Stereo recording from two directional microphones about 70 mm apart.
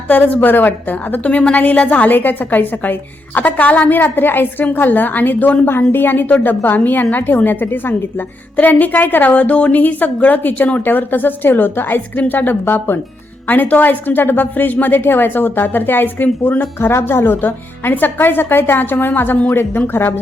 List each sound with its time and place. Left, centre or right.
0.1 s a woman's voice: left